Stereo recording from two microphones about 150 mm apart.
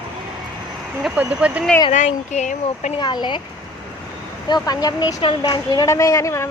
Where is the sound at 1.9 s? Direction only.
50° left (ahead or behind).